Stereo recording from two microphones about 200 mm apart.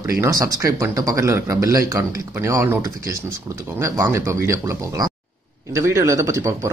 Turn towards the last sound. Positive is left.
turn(degrees=-15)  # may be behind; listen again after turning